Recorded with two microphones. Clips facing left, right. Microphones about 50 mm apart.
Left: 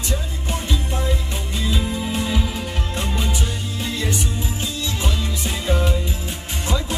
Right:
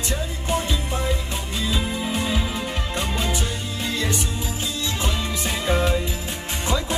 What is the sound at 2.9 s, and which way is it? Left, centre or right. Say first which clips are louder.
Music: left 1 dB; right.